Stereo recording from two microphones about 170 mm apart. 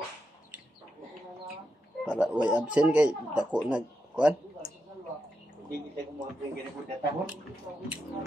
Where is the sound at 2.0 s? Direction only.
5° right (ahead or behind).